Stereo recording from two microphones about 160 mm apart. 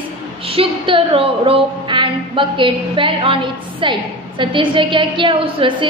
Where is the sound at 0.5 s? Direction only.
35° right (ahead or behind).